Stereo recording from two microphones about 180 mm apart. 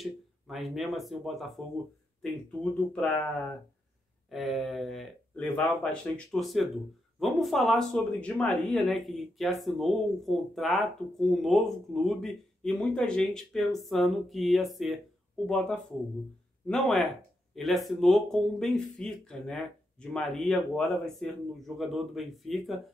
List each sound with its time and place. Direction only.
0.0 s speech: centre (ahead or behind)
2.6 s speech: 5° left (ahead or behind)
4.3 s speech: centre (ahead or behind)